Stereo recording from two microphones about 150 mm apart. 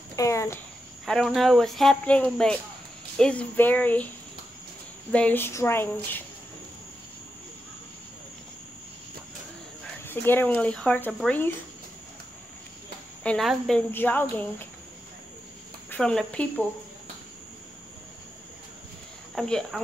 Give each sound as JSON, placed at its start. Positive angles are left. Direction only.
{"t": 0.1, "sound": "speech", "side_deg": 20}
{"t": 1.0, "sound": "speech", "side_deg": 0}
{"t": 5.1, "sound": "speech", "side_deg": 10}
{"t": 10.0, "sound": "speech", "side_deg": 15}
{"t": 13.2, "sound": "speech", "side_deg": 10}
{"t": 15.9, "sound": "speech", "side_deg": 5}
{"t": 19.3, "sound": "speech", "side_deg": 5}